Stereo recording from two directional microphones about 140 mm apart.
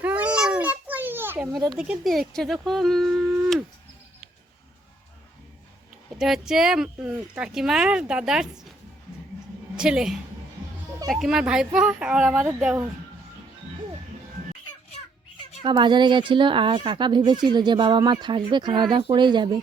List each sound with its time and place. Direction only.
0.0 s a sound: 10° right (ahead or behind)
1.7 s speech: 5° right (ahead or behind)
6.1 s speech: 5° right (ahead or behind)
9.7 s speech: 5° right (ahead or behind)
15.6 s speech: 35° right (ahead or behind)